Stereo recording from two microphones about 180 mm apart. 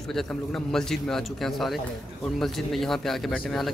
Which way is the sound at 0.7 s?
5° left (ahead or behind).